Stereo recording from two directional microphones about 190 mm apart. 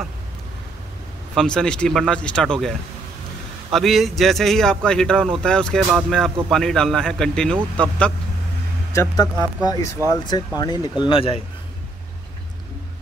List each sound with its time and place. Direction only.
1.3 s a man's voice: 5° left (ahead or behind)
3.7 s a man's voice: centre (ahead or behind)
8.9 s speech: 15° left (ahead or behind)